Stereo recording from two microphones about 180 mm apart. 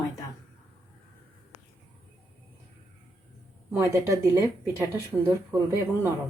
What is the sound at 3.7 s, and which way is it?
Speech, 15° right (ahead or behind).